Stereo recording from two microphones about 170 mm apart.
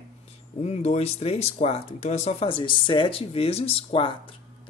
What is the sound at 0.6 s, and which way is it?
Speech, 40° left (ahead or behind).